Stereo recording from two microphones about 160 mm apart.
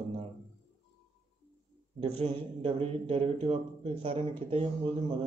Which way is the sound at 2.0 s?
40° right (ahead or behind).